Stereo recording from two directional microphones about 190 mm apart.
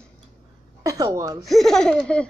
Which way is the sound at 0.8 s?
20° right (ahead or behind).